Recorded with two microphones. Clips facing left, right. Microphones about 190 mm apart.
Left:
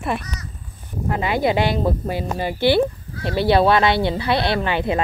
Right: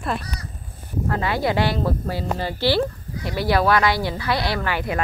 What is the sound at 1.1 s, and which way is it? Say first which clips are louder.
Speech: left 3 dB; 20° left (ahead or behind).